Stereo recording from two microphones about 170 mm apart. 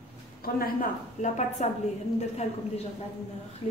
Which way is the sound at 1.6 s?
45° left (ahead or behind).